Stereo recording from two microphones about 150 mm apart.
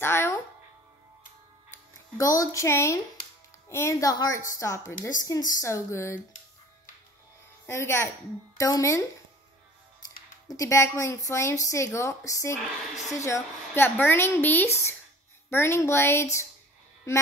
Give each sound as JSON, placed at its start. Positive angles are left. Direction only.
{"t": 0.0, "sound": "a sound", "side_deg": 15}
{"t": 2.1, "sound": "a woman's voice", "side_deg": 20}
{"t": 7.6, "sound": "a woman's voice", "side_deg": 15}
{"t": 10.5, "sound": "a woman's voice", "side_deg": 20}